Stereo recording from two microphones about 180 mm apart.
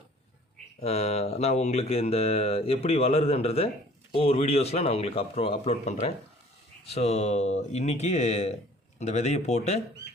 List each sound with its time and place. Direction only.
0.8 s speech: 35° left (ahead or behind)